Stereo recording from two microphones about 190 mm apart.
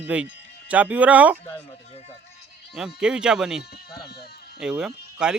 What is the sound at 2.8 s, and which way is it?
Speech, 5° right (ahead or behind).